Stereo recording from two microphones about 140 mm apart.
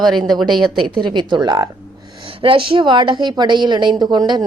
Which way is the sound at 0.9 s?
35° right (ahead or behind).